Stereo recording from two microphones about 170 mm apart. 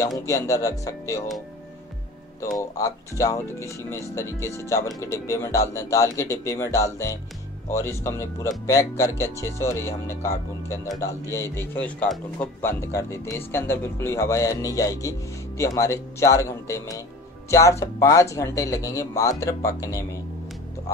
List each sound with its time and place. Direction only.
0.3 s speech: 20° left (ahead or behind)
2.5 s speech: 20° left (ahead or behind)